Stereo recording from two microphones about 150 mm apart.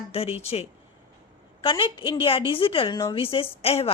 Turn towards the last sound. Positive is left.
turn(degrees=40)  # may be behind; listen again after turning